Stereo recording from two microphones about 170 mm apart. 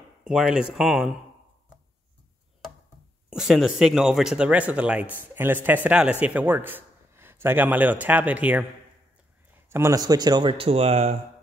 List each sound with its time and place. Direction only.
0.2 s speech: 5° right (ahead or behind)
3.3 s a man's voice: 5° right (ahead or behind)
9.7 s speech: 15° right (ahead or behind); by 11.1 s 40° right (ahead or behind)